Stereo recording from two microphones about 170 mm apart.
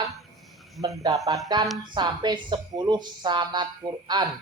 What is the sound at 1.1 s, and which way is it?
Speech, 25° right (ahead or behind).